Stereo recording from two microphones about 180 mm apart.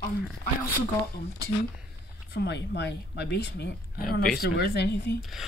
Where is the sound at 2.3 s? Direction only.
70° left (ahead or behind).